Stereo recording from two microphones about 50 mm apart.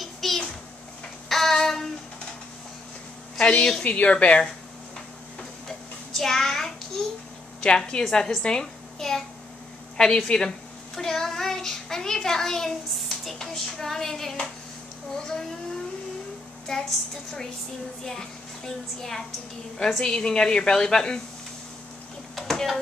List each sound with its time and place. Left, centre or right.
0.0 s a sound: centre
1.3 s child singing: centre
3.3 s a woman's voice: centre
3.8 s speech: left
5.4 s a sound: centre
7.6 s a child's voice: centre
11.0 s child singing: centre
13.2 s speech: centre
16.7 s a woman's voice: centre
18.0 s a woman's voice: centre
22.3 s a sound: centre